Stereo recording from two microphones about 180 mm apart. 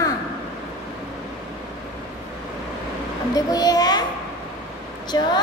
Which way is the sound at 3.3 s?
20° left (ahead or behind).